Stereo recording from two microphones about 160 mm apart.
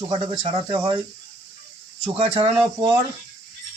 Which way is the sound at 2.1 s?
40° right (ahead or behind).